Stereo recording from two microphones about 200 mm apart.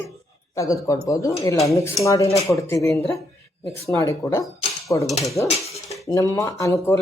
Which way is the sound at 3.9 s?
15° left (ahead or behind).